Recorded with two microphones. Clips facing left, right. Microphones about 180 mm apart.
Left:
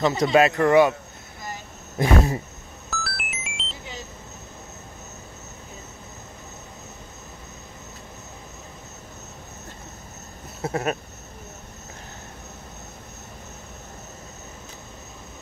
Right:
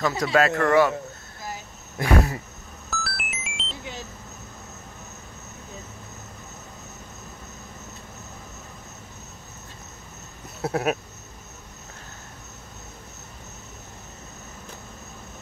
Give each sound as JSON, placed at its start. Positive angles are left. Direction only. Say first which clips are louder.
{"t": 0.2, "sound": "speech", "louder": "left 3 dB", "side_deg": 20}
{"t": 2.0, "sound": "speech", "louder": "left 2 dB", "side_deg": 25}
{"t": 2.9, "sound": "music", "louder": "even", "side_deg": 0}
{"t": 10.6, "sound": "a sound", "louder": "right 1 dB", "side_deg": -5}